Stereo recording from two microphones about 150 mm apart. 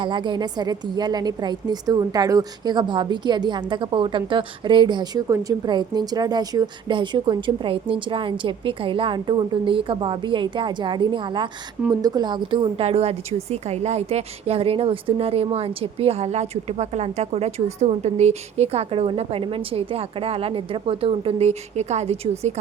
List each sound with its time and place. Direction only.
0.0 s a woman's voice: 30° right (ahead or behind)